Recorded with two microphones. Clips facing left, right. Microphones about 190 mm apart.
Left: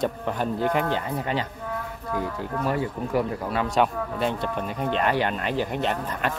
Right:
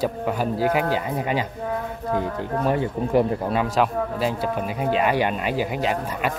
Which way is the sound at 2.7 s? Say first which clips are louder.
Right 5 dB; 25° right (ahead or behind).